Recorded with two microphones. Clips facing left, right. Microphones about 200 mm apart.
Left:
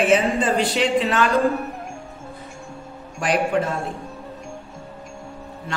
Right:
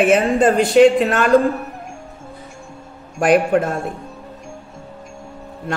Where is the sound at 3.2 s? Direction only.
50° right (ahead or behind).